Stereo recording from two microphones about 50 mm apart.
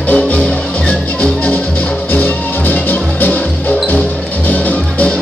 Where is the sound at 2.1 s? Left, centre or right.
Left.